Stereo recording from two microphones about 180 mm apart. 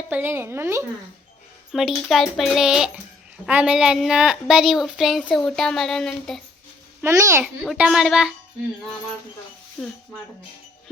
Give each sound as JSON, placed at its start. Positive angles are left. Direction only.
{"t": 0.1, "sound": "a woman's voice", "side_deg": -10}
{"t": 1.7, "sound": "a woman's voice", "side_deg": 0}
{"t": 7.0, "sound": "a woman's voice", "side_deg": -15}
{"t": 7.4, "sound": "a woman's voice", "side_deg": -5}
{"t": 9.8, "sound": "speech", "side_deg": 5}